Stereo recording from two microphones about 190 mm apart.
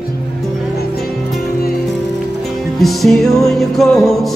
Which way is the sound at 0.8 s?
55° left (ahead or behind).